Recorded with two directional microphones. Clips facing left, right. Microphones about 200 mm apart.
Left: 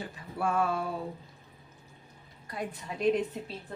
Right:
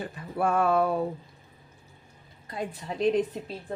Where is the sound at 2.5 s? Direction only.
25° right (ahead or behind).